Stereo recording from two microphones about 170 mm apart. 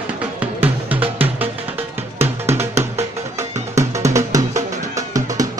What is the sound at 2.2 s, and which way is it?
Music, 15° right (ahead or behind).